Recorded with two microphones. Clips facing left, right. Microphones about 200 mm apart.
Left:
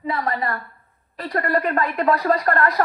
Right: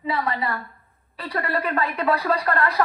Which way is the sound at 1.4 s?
45° left (ahead or behind).